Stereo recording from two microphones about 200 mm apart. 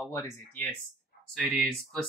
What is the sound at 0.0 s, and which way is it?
Speech, 15° left (ahead or behind).